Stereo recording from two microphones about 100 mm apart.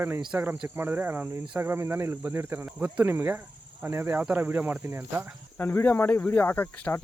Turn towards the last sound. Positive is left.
turn(degrees=20)  # may be behind; listen again after turning